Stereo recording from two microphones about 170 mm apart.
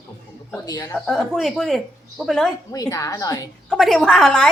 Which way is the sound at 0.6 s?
20° left (ahead or behind).